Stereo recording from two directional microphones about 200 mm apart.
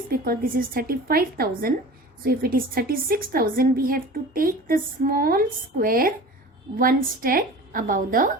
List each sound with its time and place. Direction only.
0.1 s a woman's voice: 45° right (ahead or behind)